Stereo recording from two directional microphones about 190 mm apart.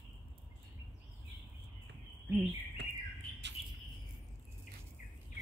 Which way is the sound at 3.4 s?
65° right (ahead or behind).